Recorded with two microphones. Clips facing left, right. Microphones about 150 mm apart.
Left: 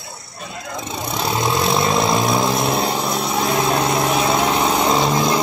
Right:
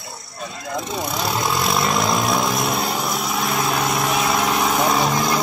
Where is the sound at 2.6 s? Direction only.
25° left (ahead or behind).